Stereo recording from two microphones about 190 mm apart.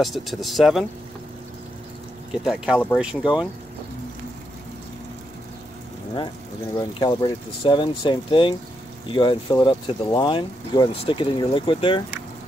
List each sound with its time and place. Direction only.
0.0 s speech: centre (ahead or behind)
2.4 s speech: 5° right (ahead or behind)
6.8 s speech: 25° left (ahead or behind)